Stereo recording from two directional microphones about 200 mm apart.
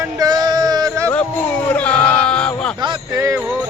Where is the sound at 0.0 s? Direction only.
20° right (ahead or behind).